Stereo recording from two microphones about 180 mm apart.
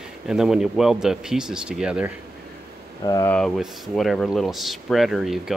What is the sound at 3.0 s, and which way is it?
Speech, 20° left (ahead or behind).